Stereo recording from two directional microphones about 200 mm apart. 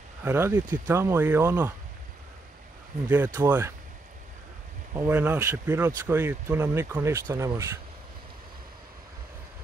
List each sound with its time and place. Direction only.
0.2 s speech: 10° right (ahead or behind)
3.3 s speech: 10° right (ahead or behind)
4.9 s speech: 10° right (ahead or behind)